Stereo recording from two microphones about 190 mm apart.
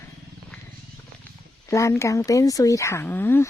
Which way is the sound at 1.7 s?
15° left (ahead or behind).